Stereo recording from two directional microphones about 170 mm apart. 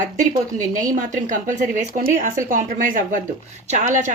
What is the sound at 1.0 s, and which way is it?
A woman's voice, 50° right (ahead or behind).